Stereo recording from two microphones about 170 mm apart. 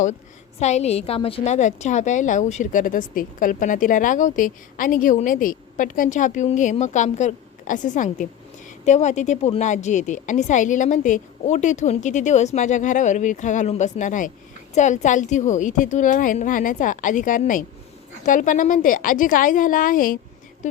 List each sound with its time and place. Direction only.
0.6 s a woman's voice: 40° left (ahead or behind)